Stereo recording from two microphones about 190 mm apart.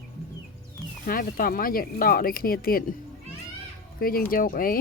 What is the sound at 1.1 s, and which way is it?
Speech, 50° left (ahead or behind).